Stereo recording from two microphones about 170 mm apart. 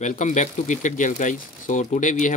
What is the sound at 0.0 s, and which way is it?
Speech, 45° left (ahead or behind).